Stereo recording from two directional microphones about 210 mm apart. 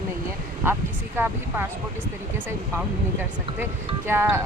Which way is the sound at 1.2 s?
10° right (ahead or behind).